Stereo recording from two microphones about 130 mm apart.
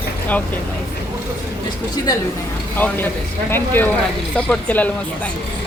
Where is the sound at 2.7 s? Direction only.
15° left (ahead or behind).